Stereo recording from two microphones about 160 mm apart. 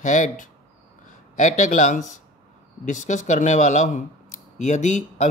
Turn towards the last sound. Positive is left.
turn(degrees=50)  # may be behind; listen again after turning